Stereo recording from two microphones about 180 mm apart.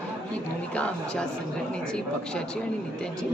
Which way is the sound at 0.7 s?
5° left (ahead or behind).